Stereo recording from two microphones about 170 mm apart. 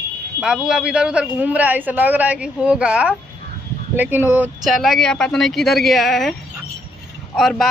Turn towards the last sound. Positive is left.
turn(degrees=0)  # may be behind; listen again after turning